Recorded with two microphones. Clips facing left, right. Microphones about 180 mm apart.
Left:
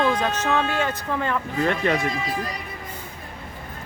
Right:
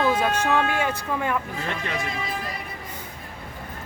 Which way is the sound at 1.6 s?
55° left (ahead or behind).